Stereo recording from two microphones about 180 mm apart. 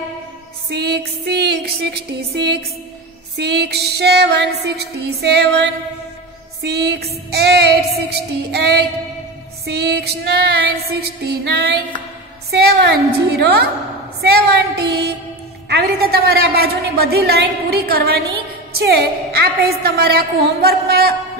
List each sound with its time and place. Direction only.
0.7 s music: 65° right (ahead or behind)
3.3 s female singing: 65° right (ahead or behind)
6.6 s a woman's voice: 65° right (ahead or behind)